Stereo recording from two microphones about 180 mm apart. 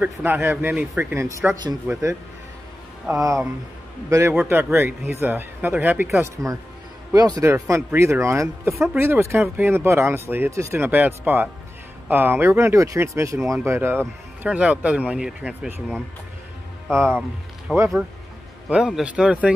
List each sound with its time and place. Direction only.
0.0 s speech: 10° right (ahead or behind)
3.2 s speech: 15° right (ahead or behind)
17.7 s speech: centre (ahead or behind)